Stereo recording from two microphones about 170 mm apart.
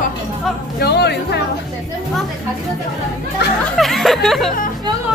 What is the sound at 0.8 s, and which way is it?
Speech, 75° left (ahead or behind).